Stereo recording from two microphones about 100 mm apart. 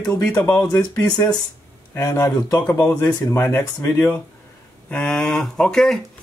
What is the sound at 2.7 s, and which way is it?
Speech, 25° left (ahead or behind).